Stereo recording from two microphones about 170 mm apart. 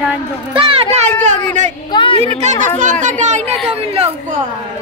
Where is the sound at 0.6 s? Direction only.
35° right (ahead or behind).